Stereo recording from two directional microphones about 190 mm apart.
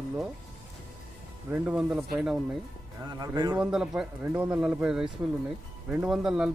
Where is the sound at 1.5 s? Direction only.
5° right (ahead or behind).